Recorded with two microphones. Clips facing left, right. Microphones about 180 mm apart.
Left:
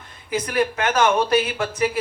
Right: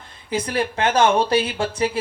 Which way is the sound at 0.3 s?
30° right (ahead or behind).